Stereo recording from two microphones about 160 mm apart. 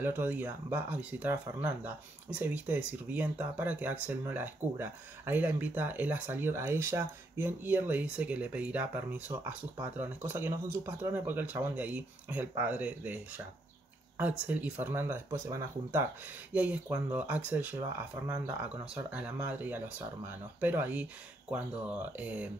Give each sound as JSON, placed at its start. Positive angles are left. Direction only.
{"t": 0.0, "sound": "speech", "side_deg": -10}
{"t": 14.4, "sound": "speech", "side_deg": -10}